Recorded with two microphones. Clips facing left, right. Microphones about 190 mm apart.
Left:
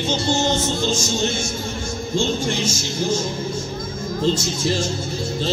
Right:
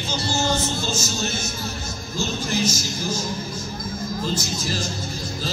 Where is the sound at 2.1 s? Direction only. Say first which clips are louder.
Left 4 dB; 25° left (ahead or behind).